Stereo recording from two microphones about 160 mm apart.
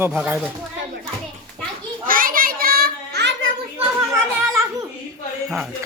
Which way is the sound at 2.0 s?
60° right (ahead or behind).